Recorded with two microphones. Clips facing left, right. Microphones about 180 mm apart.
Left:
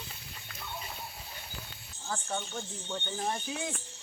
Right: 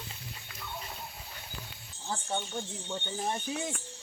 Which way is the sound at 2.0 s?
20° right (ahead or behind).